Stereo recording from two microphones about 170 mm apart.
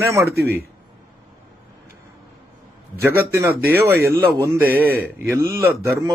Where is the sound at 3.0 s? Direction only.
15° right (ahead or behind).